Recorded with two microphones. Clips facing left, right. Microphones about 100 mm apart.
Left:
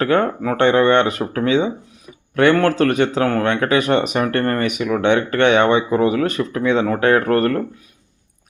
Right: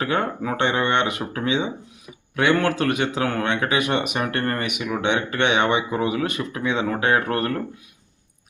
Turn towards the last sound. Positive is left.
turn(degrees=45)  # may be behind; listen again after turning